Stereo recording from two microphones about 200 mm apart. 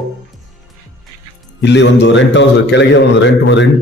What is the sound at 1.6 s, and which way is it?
A man's voice, 60° left (ahead or behind).